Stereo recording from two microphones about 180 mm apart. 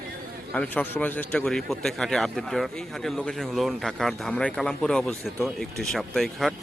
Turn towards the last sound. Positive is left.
turn(degrees=0)  # may be behind; listen again after turning